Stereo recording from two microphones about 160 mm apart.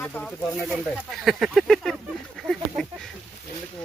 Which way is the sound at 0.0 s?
10° left (ahead or behind).